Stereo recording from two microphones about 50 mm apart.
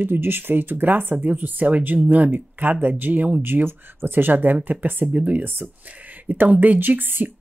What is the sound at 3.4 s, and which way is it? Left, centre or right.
Speech, right.